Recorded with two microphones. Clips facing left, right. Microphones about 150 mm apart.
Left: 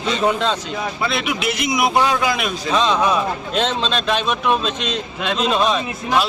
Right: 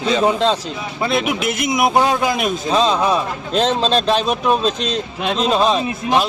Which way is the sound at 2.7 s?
35° right (ahead or behind).